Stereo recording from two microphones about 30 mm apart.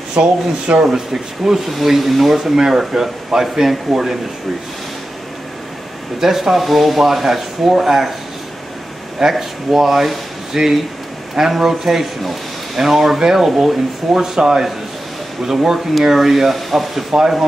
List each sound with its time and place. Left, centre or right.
0.1 s speech: right
0.9 s speech: centre
1.9 s speech: centre
2.5 s speech: centre
6.2 s speech: centre
9.3 s speech: centre